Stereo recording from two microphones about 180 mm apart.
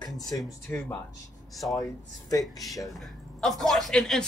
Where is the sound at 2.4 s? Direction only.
Centre (ahead or behind).